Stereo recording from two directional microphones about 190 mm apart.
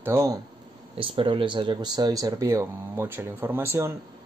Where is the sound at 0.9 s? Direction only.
30° right (ahead or behind).